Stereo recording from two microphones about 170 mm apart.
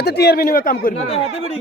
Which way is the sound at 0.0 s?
75° left (ahead or behind).